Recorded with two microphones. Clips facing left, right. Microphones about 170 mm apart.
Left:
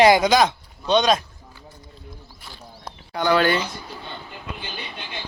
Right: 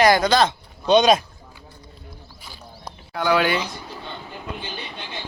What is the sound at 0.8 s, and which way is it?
Speech, 10° right (ahead or behind).